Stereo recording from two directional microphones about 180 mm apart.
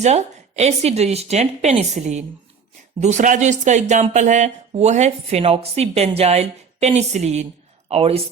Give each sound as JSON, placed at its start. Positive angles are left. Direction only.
{"t": 0.0, "sound": "speech", "side_deg": -40}